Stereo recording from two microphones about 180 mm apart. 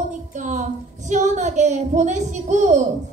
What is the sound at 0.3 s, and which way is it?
Speech, 45° right (ahead or behind).